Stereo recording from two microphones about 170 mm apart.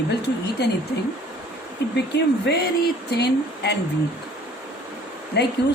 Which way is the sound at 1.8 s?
90° left.